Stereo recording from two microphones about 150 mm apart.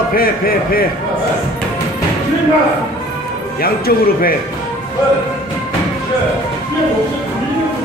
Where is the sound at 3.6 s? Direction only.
85° left.